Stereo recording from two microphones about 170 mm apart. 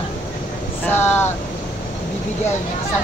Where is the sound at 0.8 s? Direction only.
10° left (ahead or behind).